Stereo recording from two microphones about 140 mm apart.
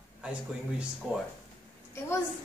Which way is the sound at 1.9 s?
20° left (ahead or behind).